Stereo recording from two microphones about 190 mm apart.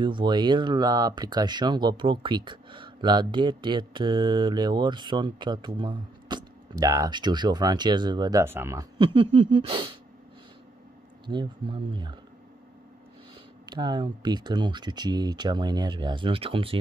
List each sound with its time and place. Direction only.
0.0 s speech: 25° right (ahead or behind)
11.2 s speech: 25° right (ahead or behind)
13.7 s speech: 25° right (ahead or behind)